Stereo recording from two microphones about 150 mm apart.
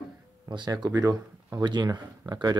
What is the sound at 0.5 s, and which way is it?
Speech, 30° right (ahead or behind).